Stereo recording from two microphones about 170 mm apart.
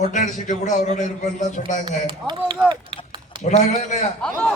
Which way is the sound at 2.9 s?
30° right (ahead or behind).